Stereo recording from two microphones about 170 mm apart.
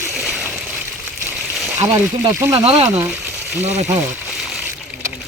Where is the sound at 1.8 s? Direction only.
20° right (ahead or behind).